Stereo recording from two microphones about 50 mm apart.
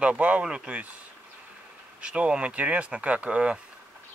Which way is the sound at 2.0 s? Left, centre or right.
Right.